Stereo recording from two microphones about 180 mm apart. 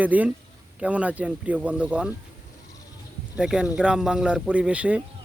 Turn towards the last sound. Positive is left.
turn(degrees=-5)  # may be behind; listen again after turning